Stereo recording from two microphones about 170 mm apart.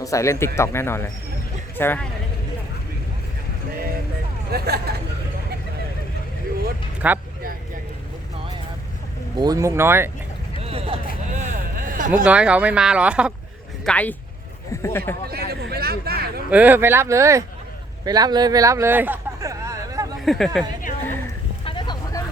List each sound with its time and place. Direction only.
0.0 s speech: 20° left (ahead or behind)
4.5 s speech: 65° right (ahead or behind)
7.0 s speech: 10° right (ahead or behind)
9.4 s speech: 20° right (ahead or behind)
10.6 s vehicle: 35° right (ahead or behind)
11.3 s a sound: 45° right (ahead or behind)
12.2 s speech: 5° right (ahead or behind)
13.8 s speech: 10° left (ahead or behind)
15.3 s speech: 65° right (ahead or behind)
16.5 s speech: 10° right (ahead or behind)
18.0 s a sound: 25° right (ahead or behind)
20.2 s speech: centre (ahead or behind)
21.6 s vehicle: 30° left (ahead or behind)